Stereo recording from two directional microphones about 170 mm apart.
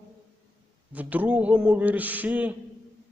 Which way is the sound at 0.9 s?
10° right (ahead or behind).